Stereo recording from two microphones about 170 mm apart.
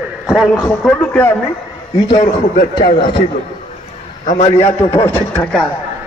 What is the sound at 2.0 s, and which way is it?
Speech, 50° left (ahead or behind).